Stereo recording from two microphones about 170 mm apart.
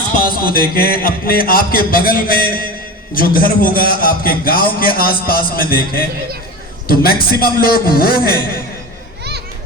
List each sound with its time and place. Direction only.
0.2 s a man's voice: 55° left (ahead or behind)